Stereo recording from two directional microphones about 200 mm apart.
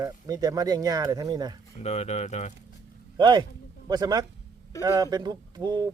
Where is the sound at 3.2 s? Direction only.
20° right (ahead or behind).